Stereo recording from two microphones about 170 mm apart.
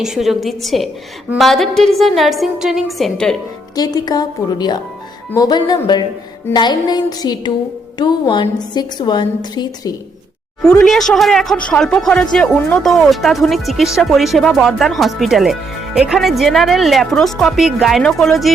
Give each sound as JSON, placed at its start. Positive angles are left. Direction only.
{"t": 0.0, "sound": "speech", "side_deg": 0}
{"t": 3.8, "sound": "a woman's voice", "side_deg": 25}
{"t": 10.6, "sound": "speech", "side_deg": 5}